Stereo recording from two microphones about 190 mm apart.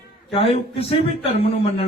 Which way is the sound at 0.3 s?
30° left (ahead or behind).